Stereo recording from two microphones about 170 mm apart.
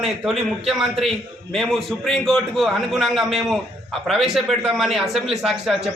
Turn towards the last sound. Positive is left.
turn(degrees=0)  # may be behind; listen again after turning